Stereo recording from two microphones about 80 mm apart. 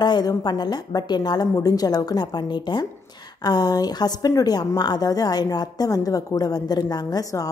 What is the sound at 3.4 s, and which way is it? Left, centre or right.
A woman's voice, left.